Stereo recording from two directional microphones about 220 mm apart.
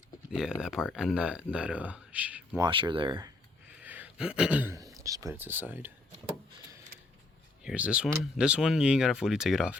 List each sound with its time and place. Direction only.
0.3 s speech: 5° right (ahead or behind)
2.6 s speech: 20° right (ahead or behind)
3.8 s speech: 5° right (ahead or behind)
7.6 s speech: 5° right (ahead or behind)